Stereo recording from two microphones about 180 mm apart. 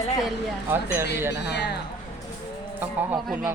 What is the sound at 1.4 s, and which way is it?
Speech, 70° left (ahead or behind).